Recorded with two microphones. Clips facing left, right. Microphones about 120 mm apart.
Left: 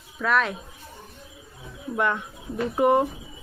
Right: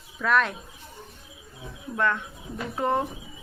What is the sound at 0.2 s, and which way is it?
Speech, centre (ahead or behind).